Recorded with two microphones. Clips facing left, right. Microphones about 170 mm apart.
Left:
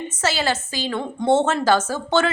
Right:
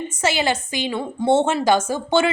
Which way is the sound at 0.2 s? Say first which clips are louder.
Right 2 dB; 15° right (ahead or behind).